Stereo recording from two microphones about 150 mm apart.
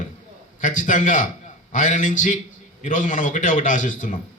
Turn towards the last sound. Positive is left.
turn(degrees=60)  # may be behind; listen again after turning